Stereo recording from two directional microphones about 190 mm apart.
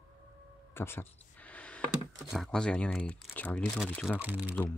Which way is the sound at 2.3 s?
Centre (ahead or behind).